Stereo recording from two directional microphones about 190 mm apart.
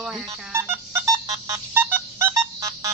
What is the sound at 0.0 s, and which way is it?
Telephone dialing, 5° right (ahead or behind).